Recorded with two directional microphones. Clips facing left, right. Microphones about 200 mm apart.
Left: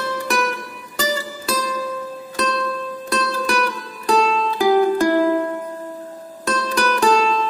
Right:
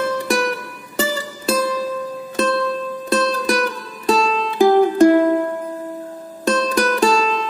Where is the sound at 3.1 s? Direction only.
25° right (ahead or behind).